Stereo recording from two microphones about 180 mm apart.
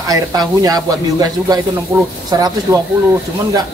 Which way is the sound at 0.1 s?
20° right (ahead or behind).